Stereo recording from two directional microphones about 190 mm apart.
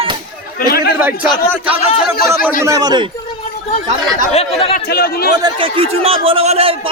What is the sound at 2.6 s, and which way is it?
Speech, 20° right (ahead or behind).